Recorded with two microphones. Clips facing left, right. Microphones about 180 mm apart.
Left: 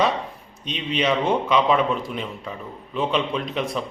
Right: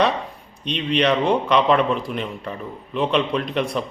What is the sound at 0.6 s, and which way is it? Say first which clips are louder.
Speech: right 5 dB; 60° right (ahead or behind).